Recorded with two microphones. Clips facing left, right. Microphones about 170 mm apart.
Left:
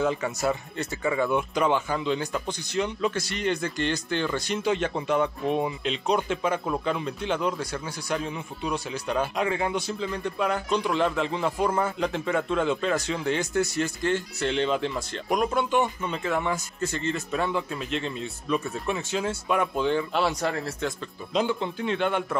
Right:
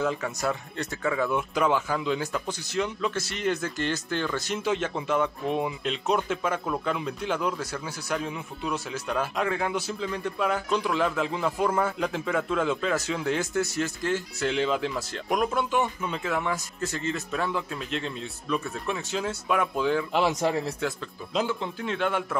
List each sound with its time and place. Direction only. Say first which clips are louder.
0.0 s speech: left 2 dB; centre (ahead or behind)
20.2 s speech: right 2 dB; 20° right (ahead or behind)
20.8 s speech: even; centre (ahead or behind)